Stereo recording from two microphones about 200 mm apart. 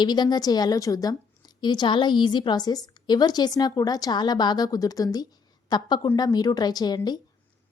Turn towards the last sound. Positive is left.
turn(degrees=20)  # may be behind; listen again after turning